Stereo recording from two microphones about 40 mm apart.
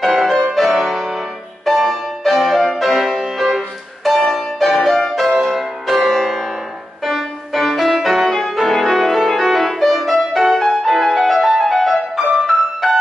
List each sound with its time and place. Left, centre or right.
0.0 s music: centre
5.2 s music: centre
11.1 s music: centre